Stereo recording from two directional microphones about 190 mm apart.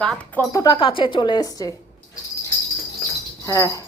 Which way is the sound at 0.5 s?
20° left (ahead or behind).